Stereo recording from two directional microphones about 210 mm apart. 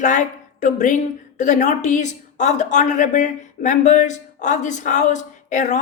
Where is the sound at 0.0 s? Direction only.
35° left (ahead or behind).